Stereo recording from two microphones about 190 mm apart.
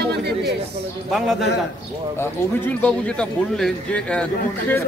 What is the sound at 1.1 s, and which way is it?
Speech, centre (ahead or behind).